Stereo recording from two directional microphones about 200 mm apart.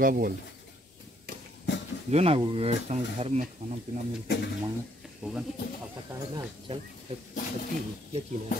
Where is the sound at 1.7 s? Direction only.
65° left (ahead or behind).